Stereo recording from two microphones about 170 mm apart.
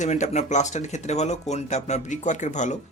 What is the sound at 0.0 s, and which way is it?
Speech, 45° left (ahead or behind).